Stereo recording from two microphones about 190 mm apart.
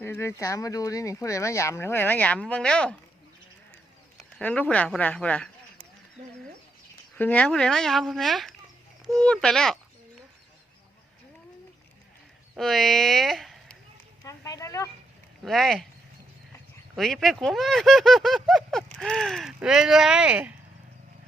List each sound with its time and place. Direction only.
0.0 s speech: 15° left (ahead or behind)
4.2 s speech: 5° left (ahead or behind)
7.2 s speech: 10° left (ahead or behind)
12.5 s speech: centre (ahead or behind)
14.3 s speech: 15° left (ahead or behind)
15.4 s speech: centre (ahead or behind)
16.9 s speech: centre (ahead or behind)